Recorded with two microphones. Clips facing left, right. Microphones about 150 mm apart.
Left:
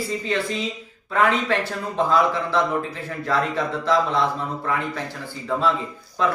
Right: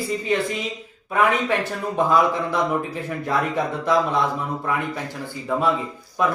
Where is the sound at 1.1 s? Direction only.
15° right (ahead or behind).